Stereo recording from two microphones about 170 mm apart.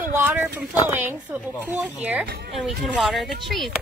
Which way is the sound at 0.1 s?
10° right (ahead or behind).